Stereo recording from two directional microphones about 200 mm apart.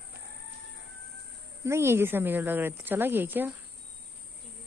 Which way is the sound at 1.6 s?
15° right (ahead or behind).